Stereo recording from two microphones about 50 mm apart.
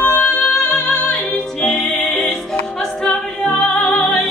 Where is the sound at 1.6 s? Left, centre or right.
Centre.